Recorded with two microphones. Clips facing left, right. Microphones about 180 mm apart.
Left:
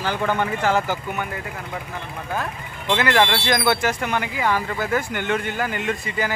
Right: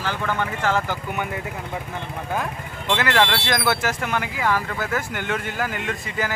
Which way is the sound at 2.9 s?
Centre (ahead or behind).